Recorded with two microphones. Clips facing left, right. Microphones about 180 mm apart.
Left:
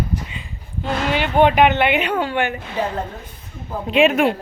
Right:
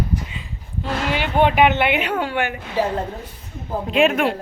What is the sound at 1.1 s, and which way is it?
Speech, 50° left (ahead or behind).